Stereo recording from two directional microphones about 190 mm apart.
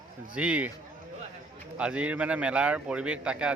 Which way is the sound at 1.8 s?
5° right (ahead or behind).